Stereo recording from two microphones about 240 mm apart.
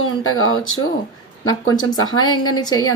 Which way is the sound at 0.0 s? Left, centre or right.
Left.